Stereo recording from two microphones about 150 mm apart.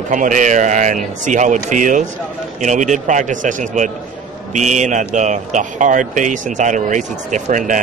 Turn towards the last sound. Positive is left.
turn(degrees=-60)  # may be behind; listen again after turning